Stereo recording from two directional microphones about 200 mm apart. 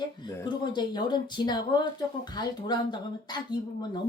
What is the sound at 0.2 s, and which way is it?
Speech, 20° left (ahead or behind).